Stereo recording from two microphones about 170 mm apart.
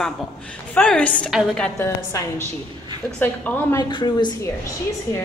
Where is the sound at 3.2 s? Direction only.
10° left (ahead or behind).